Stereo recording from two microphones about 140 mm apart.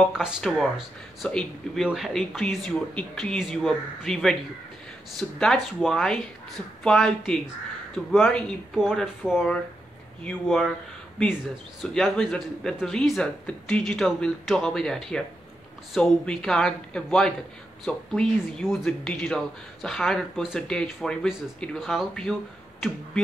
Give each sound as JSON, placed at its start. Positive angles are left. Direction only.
{"t": 0.0, "sound": "speech", "side_deg": 0}
{"t": 5.4, "sound": "speech", "side_deg": 5}
{"t": 11.8, "sound": "speech", "side_deg": 5}